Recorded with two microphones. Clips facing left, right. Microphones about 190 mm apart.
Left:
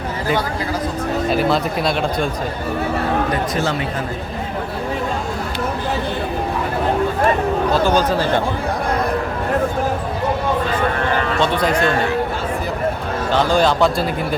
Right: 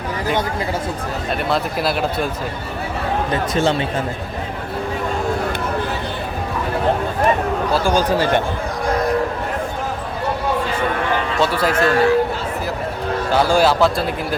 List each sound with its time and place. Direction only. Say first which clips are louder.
1.3 s speech: left 2 dB; centre (ahead or behind)
3.5 s speech: right 3 dB; 25° right (ahead or behind)
7.7 s speech: left 1 dB; 10° right (ahead or behind)
11.3 s speech: right 1 dB; 5° right (ahead or behind)
13.3 s speech: right 1 dB; 10° right (ahead or behind)